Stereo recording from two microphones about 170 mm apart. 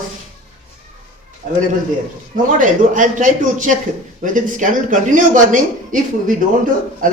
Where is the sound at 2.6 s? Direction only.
50° right (ahead or behind).